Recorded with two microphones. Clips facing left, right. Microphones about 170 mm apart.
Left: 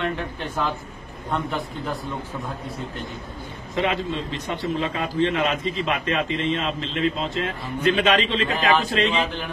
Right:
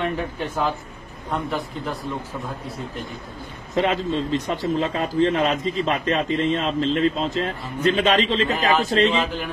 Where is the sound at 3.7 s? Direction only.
40° right (ahead or behind).